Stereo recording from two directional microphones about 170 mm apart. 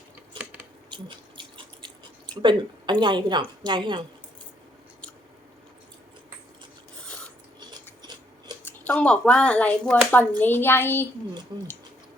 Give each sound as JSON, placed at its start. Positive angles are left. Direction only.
{"t": 0.4, "sound": "cutlery", "side_deg": -30}
{"t": 0.9, "sound": "chewing", "side_deg": -30}
{"t": 2.4, "sound": "speech", "side_deg": -25}
{"t": 7.0, "sound": "filing", "side_deg": 5}
{"t": 8.6, "sound": "speech", "side_deg": 10}
{"t": 11.5, "sound": "speech", "side_deg": -25}